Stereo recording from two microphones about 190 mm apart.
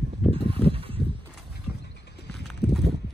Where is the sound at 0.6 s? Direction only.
30° right (ahead or behind).